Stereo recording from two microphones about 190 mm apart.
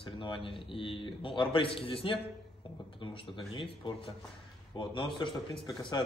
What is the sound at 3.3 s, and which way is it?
A man's voice, 25° left (ahead or behind).